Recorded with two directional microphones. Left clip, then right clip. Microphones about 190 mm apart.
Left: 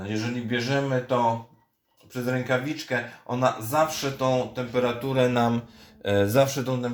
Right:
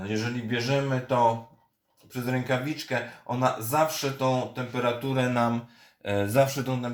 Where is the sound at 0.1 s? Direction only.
15° left (ahead or behind).